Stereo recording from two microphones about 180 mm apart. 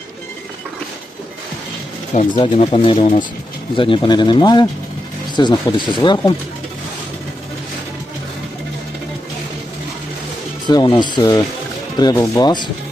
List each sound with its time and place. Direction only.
2.4 s speech: 30° left (ahead or behind)
10.7 s speech: 25° left (ahead or behind)